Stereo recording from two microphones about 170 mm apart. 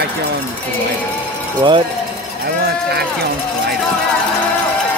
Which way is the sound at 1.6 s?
30° right (ahead or behind).